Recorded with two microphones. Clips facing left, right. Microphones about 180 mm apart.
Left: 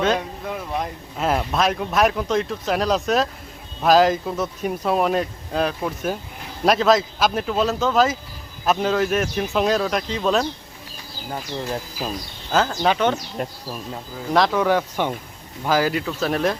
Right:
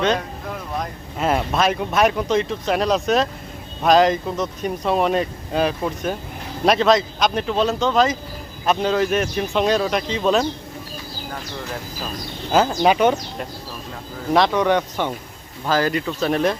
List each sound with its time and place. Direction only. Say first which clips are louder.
0.8 s speech: right 1 dB; centre (ahead or behind)
12.5 s speech: right 3 dB; 10° right (ahead or behind)
14.3 s speech: right 1 dB; centre (ahead or behind)